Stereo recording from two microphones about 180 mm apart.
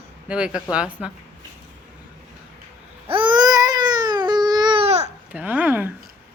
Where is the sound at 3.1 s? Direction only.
25° right (ahead or behind).